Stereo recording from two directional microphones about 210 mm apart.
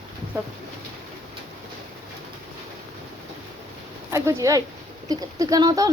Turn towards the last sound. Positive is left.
turn(degrees=-15)  # may be behind; listen again after turning